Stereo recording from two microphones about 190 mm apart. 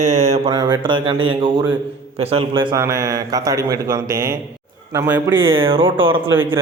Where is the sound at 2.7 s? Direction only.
15° right (ahead or behind).